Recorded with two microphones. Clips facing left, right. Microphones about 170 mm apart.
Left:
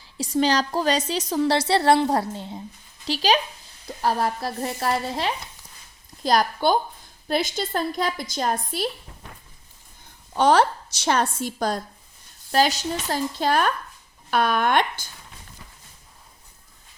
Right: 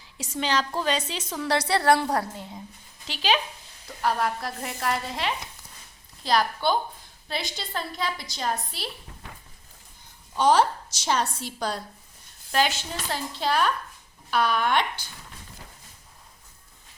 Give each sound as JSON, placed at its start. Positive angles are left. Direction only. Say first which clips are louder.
{"t": 0.0, "sound": "a woman's voice", "louder": "left 9 dB", "side_deg": 35}
{"t": 3.1, "sound": "a woman's voice", "louder": "left 4 dB", "side_deg": 40}
{"t": 10.3, "sound": "a woman's voice", "louder": "left 2 dB", "side_deg": 60}